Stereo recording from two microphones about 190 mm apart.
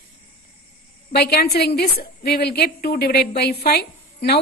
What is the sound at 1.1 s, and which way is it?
A woman's voice, 55° left (ahead or behind).